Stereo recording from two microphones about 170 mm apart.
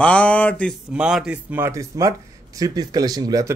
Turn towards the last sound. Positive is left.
turn(degrees=-20)  # may be behind; listen again after turning